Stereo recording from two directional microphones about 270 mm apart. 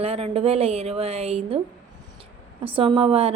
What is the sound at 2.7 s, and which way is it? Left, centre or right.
Speech, centre.